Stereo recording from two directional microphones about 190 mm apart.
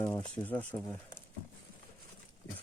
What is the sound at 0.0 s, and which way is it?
Speech, 10° left (ahead or behind).